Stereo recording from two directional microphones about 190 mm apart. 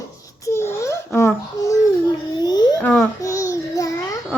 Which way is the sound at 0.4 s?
15° left (ahead or behind).